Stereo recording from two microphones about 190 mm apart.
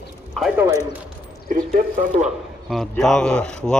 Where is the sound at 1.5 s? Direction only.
45° right (ahead or behind).